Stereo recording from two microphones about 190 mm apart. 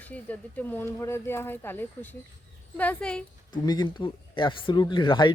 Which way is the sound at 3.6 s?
20° left (ahead or behind).